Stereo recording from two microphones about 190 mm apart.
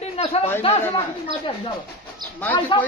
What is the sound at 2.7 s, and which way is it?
Speech, 25° left (ahead or behind).